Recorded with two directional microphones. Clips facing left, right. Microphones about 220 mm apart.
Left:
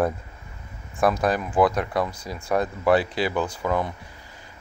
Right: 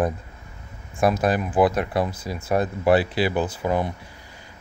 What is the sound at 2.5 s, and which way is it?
Speech, 30° right (ahead or behind).